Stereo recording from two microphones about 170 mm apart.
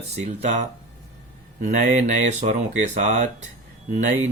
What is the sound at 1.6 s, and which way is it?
Speech, 45° right (ahead or behind).